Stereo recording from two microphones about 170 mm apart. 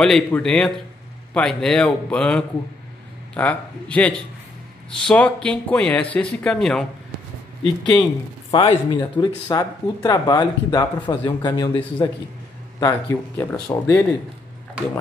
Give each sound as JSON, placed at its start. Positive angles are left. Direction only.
{"t": 0.0, "sound": "a man's voice", "side_deg": 5}
{"t": 7.6, "sound": "speech", "side_deg": 25}
{"t": 12.8, "sound": "speech", "side_deg": 15}